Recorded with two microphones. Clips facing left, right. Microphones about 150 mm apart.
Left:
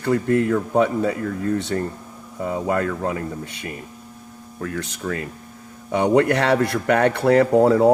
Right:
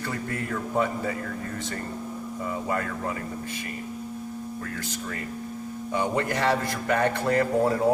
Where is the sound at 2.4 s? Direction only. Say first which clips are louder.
Left 8 dB; 75° left (ahead or behind).